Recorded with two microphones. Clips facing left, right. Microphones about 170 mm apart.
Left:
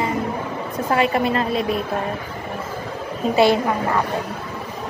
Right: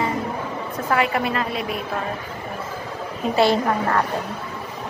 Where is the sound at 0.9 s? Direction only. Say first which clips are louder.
Left 3 dB; 30° left (ahead or behind).